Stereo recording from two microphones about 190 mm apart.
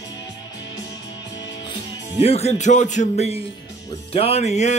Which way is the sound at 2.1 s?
30° left (ahead or behind).